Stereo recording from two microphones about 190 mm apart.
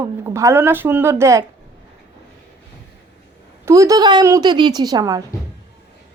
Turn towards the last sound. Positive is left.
turn(degrees=-20)  # may be behind; listen again after turning